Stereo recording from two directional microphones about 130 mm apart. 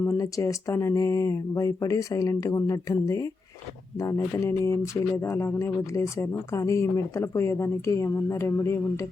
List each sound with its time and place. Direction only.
0.0 s speech: 25° left (ahead or behind)